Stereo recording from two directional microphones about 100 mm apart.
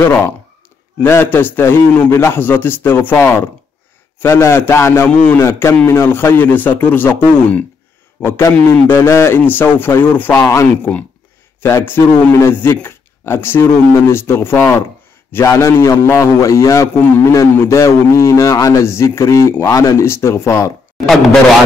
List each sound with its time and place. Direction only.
1.0 s a man's voice: 25° left (ahead or behind)
8.2 s a man's voice: 30° left (ahead or behind)
21.0 s speech: 5° left (ahead or behind)